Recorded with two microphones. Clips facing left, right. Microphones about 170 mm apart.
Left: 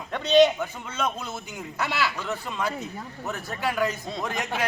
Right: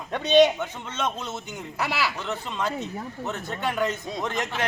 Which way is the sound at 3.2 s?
5° left (ahead or behind).